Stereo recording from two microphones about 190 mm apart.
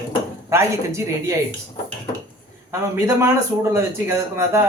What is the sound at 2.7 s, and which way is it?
Speech, 15° right (ahead or behind).